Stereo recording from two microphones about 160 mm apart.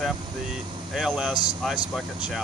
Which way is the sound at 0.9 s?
5° right (ahead or behind).